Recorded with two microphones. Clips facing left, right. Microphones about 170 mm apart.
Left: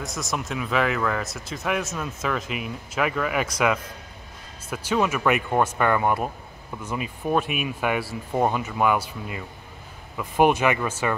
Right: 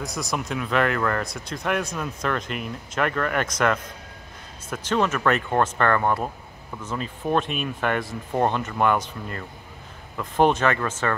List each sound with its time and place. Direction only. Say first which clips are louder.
0.0 s speech: right 1 dB; centre (ahead or behind)